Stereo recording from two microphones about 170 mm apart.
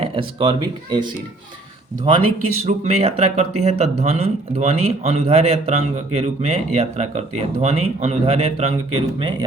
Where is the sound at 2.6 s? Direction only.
40° right (ahead or behind).